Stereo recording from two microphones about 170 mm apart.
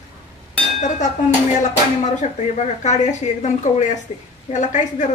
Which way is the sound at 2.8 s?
45° left (ahead or behind).